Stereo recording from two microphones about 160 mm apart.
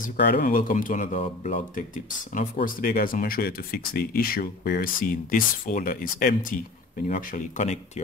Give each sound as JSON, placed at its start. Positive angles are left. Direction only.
{"t": 0.0, "sound": "speech", "side_deg": 70}
{"t": 1.1, "sound": "speech", "side_deg": 40}
{"t": 1.8, "sound": "speech", "side_deg": 55}